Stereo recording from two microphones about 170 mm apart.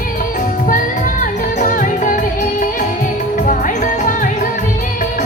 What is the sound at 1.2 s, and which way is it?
Music, 50° left (ahead or behind).